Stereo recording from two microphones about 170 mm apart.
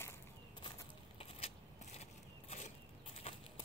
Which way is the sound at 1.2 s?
35° left (ahead or behind).